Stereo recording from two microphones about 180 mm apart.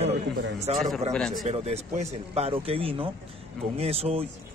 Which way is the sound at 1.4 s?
35° right (ahead or behind).